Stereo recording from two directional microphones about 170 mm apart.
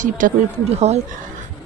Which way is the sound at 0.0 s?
50° right (ahead or behind).